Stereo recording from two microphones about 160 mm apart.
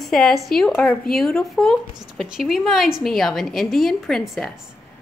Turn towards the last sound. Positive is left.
turn(degrees=0)  # may be behind; listen again after turning